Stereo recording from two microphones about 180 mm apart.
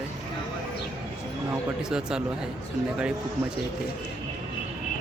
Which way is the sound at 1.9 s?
5° right (ahead or behind).